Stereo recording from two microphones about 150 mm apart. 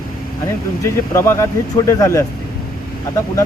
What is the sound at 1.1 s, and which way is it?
Speech, 20° left (ahead or behind).